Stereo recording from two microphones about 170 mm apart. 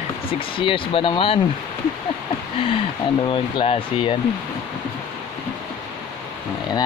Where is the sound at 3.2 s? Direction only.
30° left (ahead or behind).